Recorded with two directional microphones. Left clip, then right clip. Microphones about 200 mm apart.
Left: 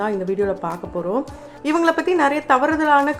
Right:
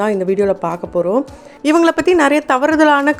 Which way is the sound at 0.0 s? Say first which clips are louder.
Right 6 dB; 35° right (ahead or behind).